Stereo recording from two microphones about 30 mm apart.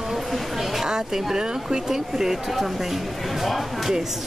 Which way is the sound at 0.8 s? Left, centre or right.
Right.